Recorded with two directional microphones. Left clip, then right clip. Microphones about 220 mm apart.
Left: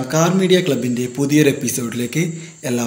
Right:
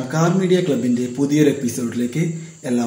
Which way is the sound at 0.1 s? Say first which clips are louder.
Left 3 dB; 40° left (ahead or behind).